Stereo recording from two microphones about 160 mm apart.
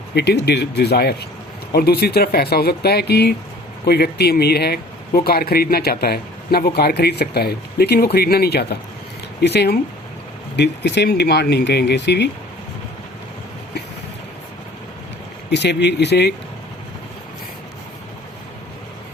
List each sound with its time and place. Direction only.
0.1 s speech: 90° left
15.4 s speech: 90° left